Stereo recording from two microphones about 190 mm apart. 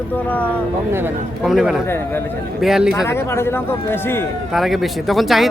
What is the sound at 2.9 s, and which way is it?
Speech, 15° left (ahead or behind).